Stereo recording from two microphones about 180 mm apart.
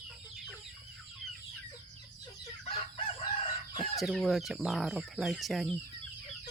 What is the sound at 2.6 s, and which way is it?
Chicken, 30° left (ahead or behind).